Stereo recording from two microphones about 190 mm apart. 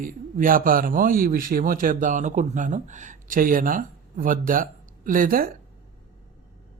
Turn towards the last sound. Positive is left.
turn(degrees=-50)  # may be behind; listen again after turning